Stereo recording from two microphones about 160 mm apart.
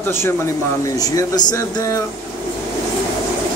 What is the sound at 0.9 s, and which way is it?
Speech, 25° left (ahead or behind).